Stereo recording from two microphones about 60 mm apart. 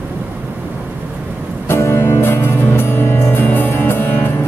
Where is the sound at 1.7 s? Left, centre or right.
Left.